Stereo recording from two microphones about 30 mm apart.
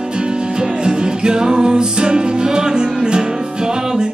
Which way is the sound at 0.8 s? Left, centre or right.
Right.